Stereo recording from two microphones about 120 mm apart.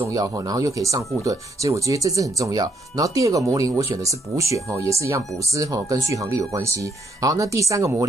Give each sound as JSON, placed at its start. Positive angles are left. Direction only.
{"t": 0.1, "sound": "speech", "side_deg": -30}